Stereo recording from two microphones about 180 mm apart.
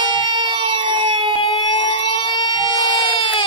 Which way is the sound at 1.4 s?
25° left (ahead or behind).